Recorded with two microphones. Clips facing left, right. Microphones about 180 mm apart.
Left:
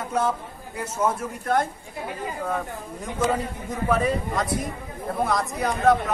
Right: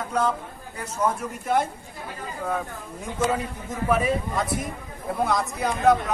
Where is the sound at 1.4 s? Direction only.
5° right (ahead or behind).